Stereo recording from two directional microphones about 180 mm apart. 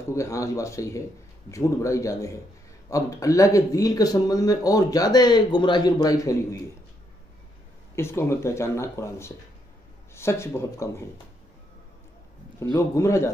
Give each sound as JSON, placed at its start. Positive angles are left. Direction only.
{"t": 0.1, "sound": "speech", "side_deg": 15}
{"t": 7.9, "sound": "speech", "side_deg": 15}
{"t": 12.7, "sound": "speech", "side_deg": 15}